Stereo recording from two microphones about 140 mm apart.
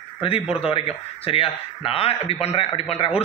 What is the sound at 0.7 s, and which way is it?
A man's voice, 40° left (ahead or behind).